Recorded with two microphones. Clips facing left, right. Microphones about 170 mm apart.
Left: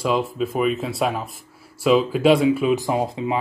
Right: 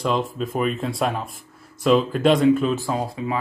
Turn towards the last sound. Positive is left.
turn(degrees=20)  # may be behind; listen again after turning